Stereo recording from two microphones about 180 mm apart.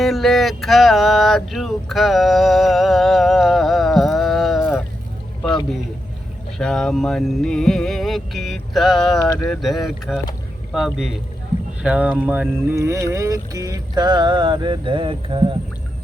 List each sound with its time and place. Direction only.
0.0 s music: centre (ahead or behind)
6.6 s music: 5° left (ahead or behind)
9.5 s speech: centre (ahead or behind); by 15.5 s 30° right (ahead or behind)